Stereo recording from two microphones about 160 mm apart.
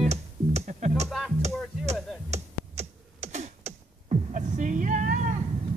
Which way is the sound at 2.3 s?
45° right (ahead or behind).